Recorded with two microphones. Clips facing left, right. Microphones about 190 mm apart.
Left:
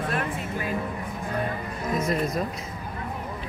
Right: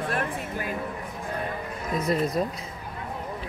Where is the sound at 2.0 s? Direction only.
35° right (ahead or behind).